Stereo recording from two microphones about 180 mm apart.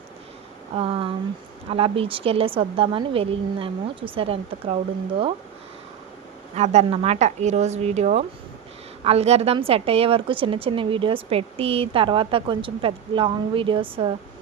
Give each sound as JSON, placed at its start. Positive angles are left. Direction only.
{"t": 0.8, "sound": "a woman's voice", "side_deg": -30}
{"t": 6.6, "sound": "a woman's voice", "side_deg": -35}